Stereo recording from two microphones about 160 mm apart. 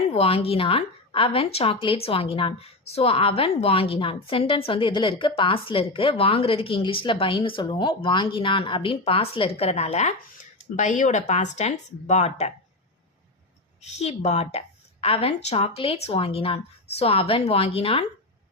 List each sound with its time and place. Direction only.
0.1 s a woman's voice: 40° left (ahead or behind)
13.8 s a woman's voice: 45° left (ahead or behind)